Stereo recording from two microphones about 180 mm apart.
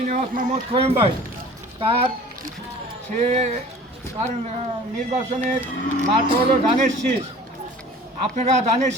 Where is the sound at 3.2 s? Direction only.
40° right (ahead or behind).